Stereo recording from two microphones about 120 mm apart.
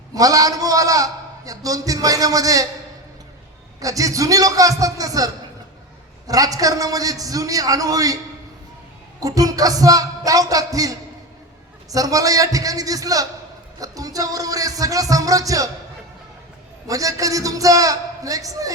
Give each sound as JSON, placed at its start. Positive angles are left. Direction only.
{"t": 0.1, "sound": "a man's voice", "side_deg": -30}
{"t": 3.8, "sound": "a man's voice", "side_deg": -30}
{"t": 9.2, "sound": "a man's voice", "side_deg": -30}
{"t": 16.8, "sound": "a man's voice", "side_deg": -30}